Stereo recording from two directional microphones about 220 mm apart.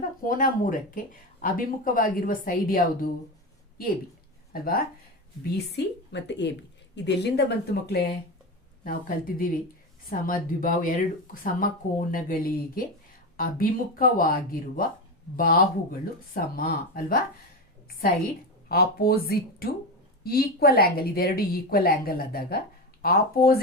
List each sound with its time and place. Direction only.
0.2 s speech: 40° left (ahead or behind)
4.5 s speech: 40° left (ahead or behind)
5.7 s a woman's voice: 50° left (ahead or behind)
18.7 s a woman's voice: 45° left (ahead or behind)